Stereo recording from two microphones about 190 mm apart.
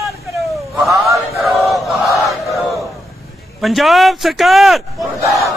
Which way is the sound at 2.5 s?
Centre (ahead or behind).